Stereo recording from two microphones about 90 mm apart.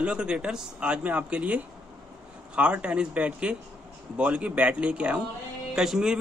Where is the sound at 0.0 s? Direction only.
10° right (ahead or behind).